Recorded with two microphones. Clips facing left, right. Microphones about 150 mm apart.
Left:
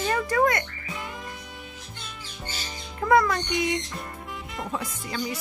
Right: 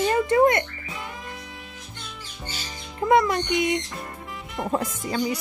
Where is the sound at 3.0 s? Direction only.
20° right (ahead or behind).